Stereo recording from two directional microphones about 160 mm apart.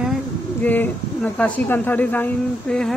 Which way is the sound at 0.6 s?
10° left (ahead or behind).